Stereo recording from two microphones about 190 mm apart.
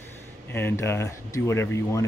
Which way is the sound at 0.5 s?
10° left (ahead or behind).